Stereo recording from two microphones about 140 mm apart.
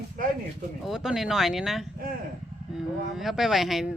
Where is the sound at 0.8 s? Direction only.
5° right (ahead or behind).